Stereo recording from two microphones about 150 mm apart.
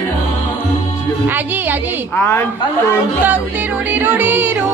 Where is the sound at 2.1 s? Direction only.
15° left (ahead or behind).